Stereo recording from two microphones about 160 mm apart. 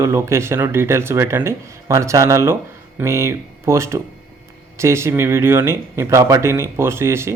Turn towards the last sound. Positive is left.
turn(degrees=-15)  # may be behind; listen again after turning